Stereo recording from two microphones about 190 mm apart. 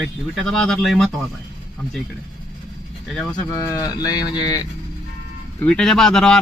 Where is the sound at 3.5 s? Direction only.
20° left (ahead or behind).